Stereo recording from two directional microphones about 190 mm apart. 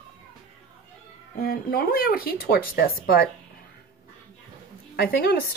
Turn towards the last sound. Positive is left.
turn(degrees=55)  # may be behind; listen again after turning